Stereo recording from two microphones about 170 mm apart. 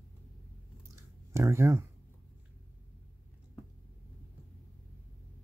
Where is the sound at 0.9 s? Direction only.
15° right (ahead or behind).